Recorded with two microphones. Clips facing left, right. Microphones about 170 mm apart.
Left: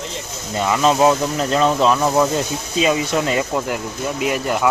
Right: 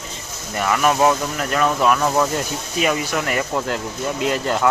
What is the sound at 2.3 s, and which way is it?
Speech, 20° left (ahead or behind).